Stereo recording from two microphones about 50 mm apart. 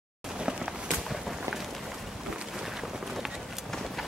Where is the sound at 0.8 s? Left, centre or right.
Centre.